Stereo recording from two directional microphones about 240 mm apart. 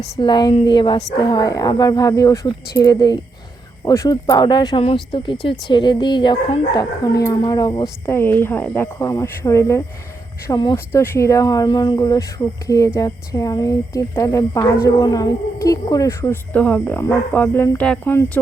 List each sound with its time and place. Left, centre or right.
0.2 s a woman's voice: centre